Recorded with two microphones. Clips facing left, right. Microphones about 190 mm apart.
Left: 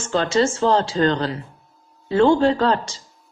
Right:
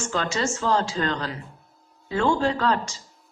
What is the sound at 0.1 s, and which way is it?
A woman's voice, 30° left (ahead or behind).